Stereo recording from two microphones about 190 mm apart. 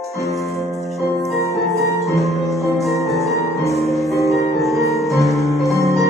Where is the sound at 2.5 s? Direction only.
Centre (ahead or behind).